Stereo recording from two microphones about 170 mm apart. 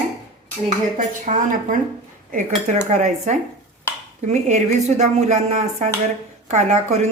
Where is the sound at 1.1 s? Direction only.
50° right (ahead or behind).